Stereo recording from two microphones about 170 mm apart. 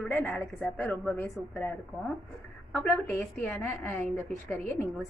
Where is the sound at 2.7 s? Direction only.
Centre (ahead or behind).